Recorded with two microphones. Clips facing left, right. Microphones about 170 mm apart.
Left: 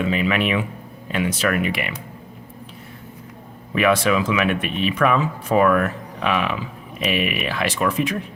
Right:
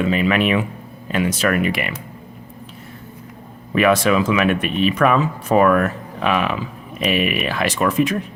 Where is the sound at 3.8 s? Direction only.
45° right (ahead or behind).